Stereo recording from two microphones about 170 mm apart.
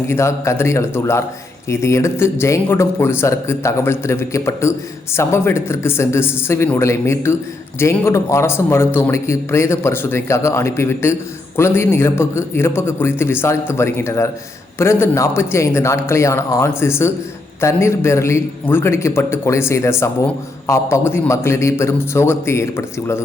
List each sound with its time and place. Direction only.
0.1 s a man's voice: 15° left (ahead or behind)